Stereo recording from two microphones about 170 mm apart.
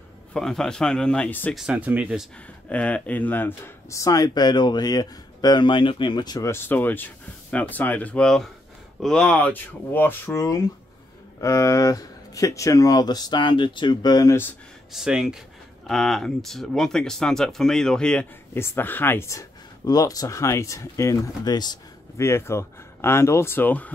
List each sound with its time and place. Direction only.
0.3 s speech: centre (ahead or behind)
1.5 s speech: 5° right (ahead or behind)
2.7 s speech: 10° left (ahead or behind)
14.9 s speech: 5° right (ahead or behind)